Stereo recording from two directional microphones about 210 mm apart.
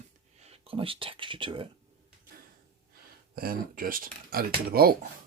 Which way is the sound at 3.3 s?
45° right (ahead or behind).